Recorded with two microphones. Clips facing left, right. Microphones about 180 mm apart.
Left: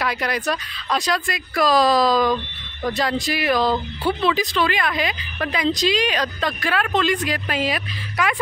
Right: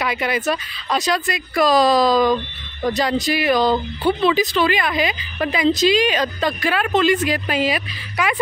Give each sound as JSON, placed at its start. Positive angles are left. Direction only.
{"t": 0.0, "sound": "speech", "side_deg": 0}